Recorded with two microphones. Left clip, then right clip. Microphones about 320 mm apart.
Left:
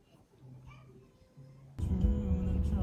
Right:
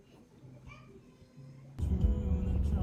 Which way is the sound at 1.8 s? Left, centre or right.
Centre.